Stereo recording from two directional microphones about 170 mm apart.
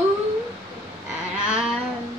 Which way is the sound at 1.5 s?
5° right (ahead or behind).